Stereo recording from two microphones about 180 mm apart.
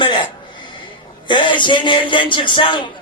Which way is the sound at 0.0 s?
25° left (ahead or behind).